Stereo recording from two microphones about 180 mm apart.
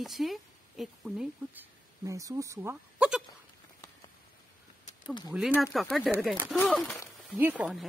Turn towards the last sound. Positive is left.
turn(degrees=-5)  # may be behind; listen again after turning